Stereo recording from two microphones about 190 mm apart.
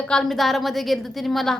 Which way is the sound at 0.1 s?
5° left (ahead or behind).